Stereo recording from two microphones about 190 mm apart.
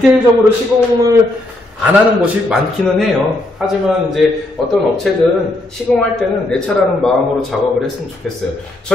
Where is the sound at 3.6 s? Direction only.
Centre (ahead or behind).